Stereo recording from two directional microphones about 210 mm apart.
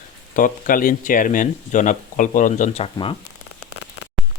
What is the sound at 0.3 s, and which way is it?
Speech, 40° left (ahead or behind).